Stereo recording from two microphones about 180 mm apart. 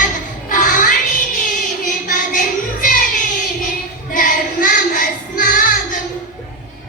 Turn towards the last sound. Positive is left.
turn(degrees=50)  # may be behind; listen again after turning